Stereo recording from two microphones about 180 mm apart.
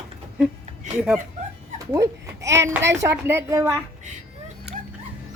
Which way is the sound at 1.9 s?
15° right (ahead or behind).